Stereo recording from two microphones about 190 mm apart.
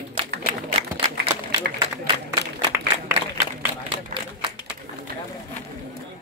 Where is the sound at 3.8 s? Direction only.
30° right (ahead or behind).